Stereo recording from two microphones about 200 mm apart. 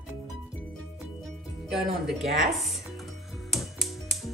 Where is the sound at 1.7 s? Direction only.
Centre (ahead or behind).